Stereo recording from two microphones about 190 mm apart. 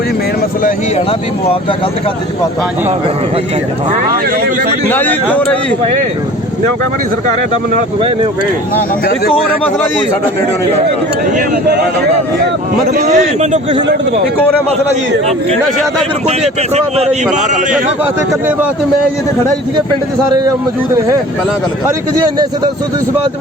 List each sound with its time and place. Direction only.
4.9 s speech: 10° left (ahead or behind)
12.9 s speech: 40° right (ahead or behind)
16.2 s speech: 35° right (ahead or behind)